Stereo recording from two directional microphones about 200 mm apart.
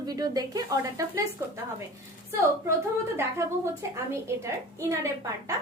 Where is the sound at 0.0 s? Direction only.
20° right (ahead or behind).